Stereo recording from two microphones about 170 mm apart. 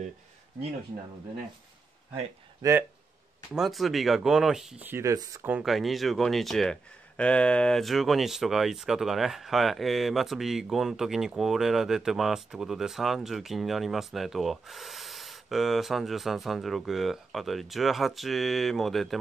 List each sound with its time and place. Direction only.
2.6 s speech: 20° right (ahead or behind)
3.5 s speech: centre (ahead or behind)